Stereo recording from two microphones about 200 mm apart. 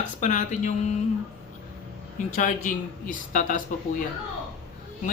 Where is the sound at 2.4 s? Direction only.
40° left (ahead or behind).